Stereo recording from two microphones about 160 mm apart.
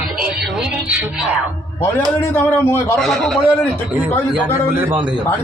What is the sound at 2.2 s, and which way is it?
Speech, 15° left (ahead or behind).